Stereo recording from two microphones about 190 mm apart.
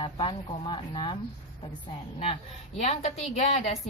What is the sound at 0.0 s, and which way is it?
Speech, 25° left (ahead or behind).